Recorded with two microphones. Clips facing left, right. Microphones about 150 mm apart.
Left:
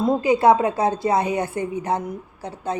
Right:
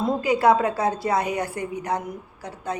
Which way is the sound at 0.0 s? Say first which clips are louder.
Left 3 dB; 20° left (ahead or behind).